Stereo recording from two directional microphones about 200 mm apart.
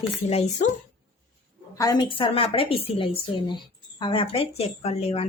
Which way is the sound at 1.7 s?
20° left (ahead or behind).